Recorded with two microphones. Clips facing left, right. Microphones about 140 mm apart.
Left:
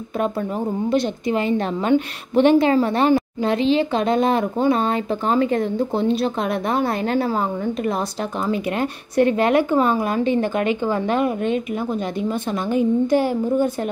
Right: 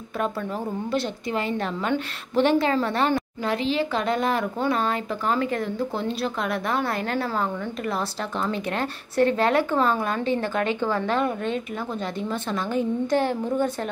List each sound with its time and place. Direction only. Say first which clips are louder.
0.8 s a woman's voice: left 8 dB; 20° left (ahead or behind)
8.5 s speech: left 7 dB; 15° left (ahead or behind)